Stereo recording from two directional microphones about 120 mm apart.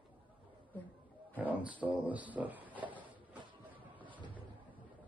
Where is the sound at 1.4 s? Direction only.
15° right (ahead or behind).